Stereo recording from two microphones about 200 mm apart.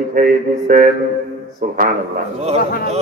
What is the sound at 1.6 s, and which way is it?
Mantra, 40° right (ahead or behind).